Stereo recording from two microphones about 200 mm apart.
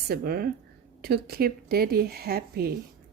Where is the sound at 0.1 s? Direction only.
50° right (ahead or behind).